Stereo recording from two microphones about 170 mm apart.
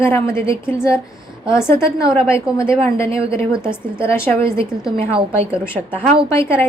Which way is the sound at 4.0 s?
15° left (ahead or behind).